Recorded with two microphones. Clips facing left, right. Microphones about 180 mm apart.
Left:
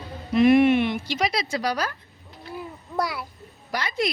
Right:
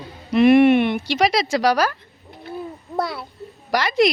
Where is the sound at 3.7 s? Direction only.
90° right.